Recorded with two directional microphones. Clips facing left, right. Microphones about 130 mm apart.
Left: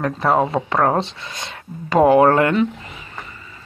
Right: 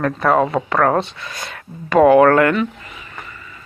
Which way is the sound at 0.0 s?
25° left (ahead or behind).